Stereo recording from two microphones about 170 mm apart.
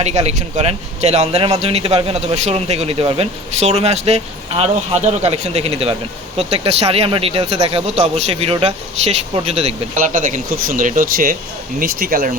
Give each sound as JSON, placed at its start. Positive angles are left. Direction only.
{"t": 0.0, "sound": "a man's voice", "side_deg": -40}
{"t": 10.0, "sound": "speech", "side_deg": -50}